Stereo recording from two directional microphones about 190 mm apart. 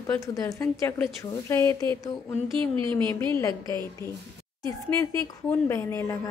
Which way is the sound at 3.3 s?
15° left (ahead or behind).